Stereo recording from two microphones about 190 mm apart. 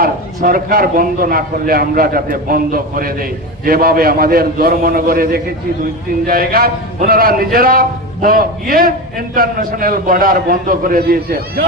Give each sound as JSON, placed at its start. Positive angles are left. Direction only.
{"t": 0.0, "sound": "a man's voice", "side_deg": -50}